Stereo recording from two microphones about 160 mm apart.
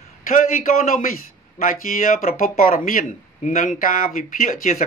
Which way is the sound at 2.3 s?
65° left (ahead or behind).